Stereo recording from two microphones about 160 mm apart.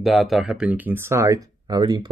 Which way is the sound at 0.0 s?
Centre (ahead or behind).